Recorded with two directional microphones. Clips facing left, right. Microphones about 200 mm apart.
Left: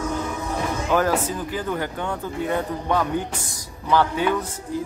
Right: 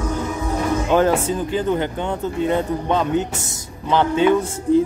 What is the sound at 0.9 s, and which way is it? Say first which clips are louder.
Speech: right 4 dB; 25° right (ahead or behind).